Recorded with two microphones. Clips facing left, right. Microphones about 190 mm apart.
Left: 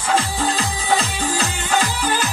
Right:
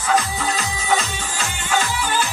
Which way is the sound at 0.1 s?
30° left (ahead or behind).